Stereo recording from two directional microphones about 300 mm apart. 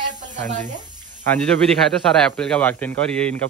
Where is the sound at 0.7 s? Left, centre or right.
Centre.